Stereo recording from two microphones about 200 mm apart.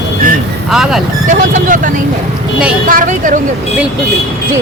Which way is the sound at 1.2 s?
40° right (ahead or behind).